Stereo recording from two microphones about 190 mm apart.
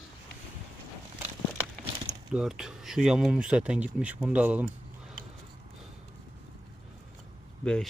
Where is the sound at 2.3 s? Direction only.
5° right (ahead or behind).